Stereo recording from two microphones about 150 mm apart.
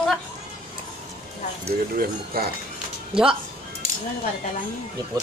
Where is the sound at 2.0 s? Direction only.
85° right.